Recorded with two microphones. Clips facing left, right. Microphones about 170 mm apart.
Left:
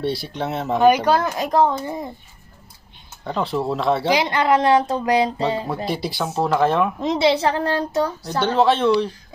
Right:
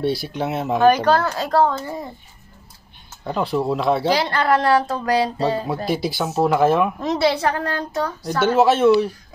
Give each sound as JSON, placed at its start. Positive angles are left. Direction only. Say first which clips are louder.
{"t": 0.0, "sound": "speech", "louder": "right 2 dB", "side_deg": 0}
{"t": 0.7, "sound": "speech", "louder": "even", "side_deg": 15}
{"t": 3.3, "sound": "speech", "louder": "right 2 dB", "side_deg": 0}
{"t": 4.1, "sound": "speech", "louder": "left 1 dB", "side_deg": 15}
{"t": 5.9, "sound": "speech", "louder": "right 2 dB", "side_deg": 0}
{"t": 7.0, "sound": "speech", "louder": "left 1 dB", "side_deg": 20}
{"t": 8.4, "sound": "speech", "louder": "right 2 dB", "side_deg": -5}